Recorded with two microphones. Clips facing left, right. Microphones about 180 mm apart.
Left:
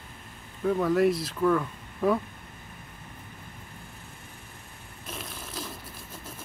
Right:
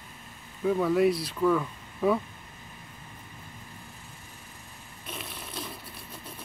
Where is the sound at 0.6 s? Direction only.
Centre (ahead or behind).